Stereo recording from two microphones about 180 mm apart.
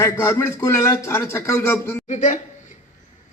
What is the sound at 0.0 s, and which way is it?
Speech, 15° left (ahead or behind).